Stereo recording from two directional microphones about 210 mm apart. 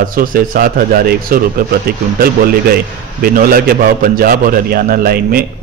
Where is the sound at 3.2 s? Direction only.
45° right (ahead or behind).